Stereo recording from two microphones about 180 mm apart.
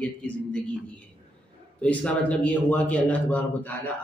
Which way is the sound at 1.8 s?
5° left (ahead or behind).